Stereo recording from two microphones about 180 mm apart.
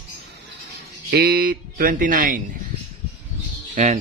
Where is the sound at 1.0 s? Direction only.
60° right (ahead or behind).